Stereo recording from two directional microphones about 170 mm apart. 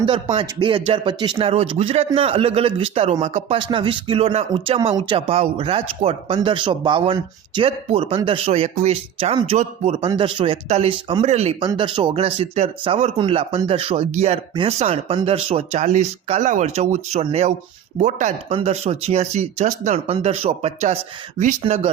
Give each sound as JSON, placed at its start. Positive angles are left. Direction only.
{"t": 0.0, "sound": "speech", "side_deg": -30}